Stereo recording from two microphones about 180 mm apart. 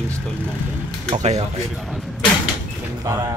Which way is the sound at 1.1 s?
40° right (ahead or behind).